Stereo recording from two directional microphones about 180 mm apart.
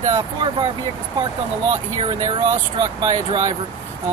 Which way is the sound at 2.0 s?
25° right (ahead or behind).